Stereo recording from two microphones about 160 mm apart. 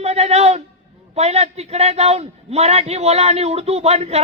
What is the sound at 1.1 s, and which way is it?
A man's voice, 40° right (ahead or behind).